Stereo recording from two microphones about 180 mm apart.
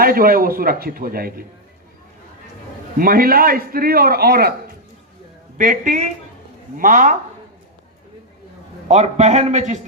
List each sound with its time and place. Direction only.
0.0 s a man's voice: 55° right (ahead or behind)
3.0 s a man's voice: 55° right (ahead or behind)
5.5 s a woman's voice: 45° right (ahead or behind)
8.9 s a man's voice: 40° right (ahead or behind)